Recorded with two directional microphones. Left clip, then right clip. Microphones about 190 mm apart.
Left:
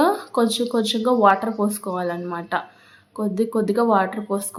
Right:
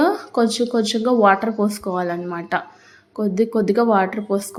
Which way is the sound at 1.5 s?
Centre (ahead or behind).